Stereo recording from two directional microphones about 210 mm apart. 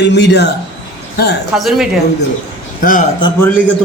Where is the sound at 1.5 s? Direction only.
Centre (ahead or behind).